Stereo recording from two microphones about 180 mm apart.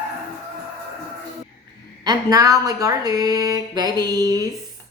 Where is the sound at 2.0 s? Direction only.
20° right (ahead or behind).